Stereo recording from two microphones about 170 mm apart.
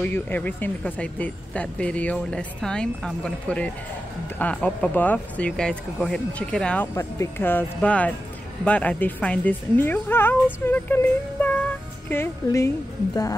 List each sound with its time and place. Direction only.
0.0 s speech: 10° left (ahead or behind)
11.4 s music: 10° left (ahead or behind)
12.1 s speech: 15° left (ahead or behind)